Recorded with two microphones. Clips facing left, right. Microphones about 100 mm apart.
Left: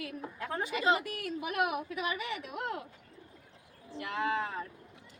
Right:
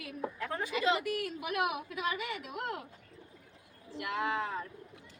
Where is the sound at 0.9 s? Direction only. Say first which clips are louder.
Even; 35° left (ahead or behind).